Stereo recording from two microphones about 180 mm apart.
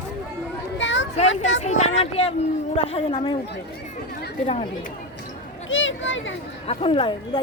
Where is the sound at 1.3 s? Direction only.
90° left.